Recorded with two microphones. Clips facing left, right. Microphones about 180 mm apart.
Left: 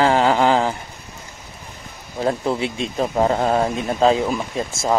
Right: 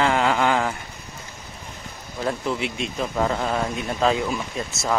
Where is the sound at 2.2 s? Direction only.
35° left (ahead or behind).